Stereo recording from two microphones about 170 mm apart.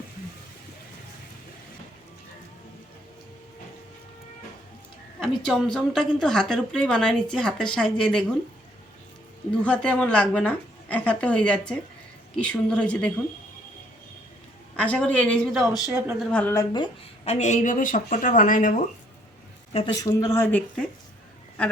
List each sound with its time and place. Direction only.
5.2 s a woman's voice: 5° left (ahead or behind)
9.6 s a woman's voice: 5° left (ahead or behind)
14.8 s a woman's voice: 10° left (ahead or behind)
16.6 s speech: 25° left (ahead or behind)
17.2 s speech: 45° left (ahead or behind)
19.7 s a woman's voice: 30° left (ahead or behind); by 20.9 s 5° left (ahead or behind)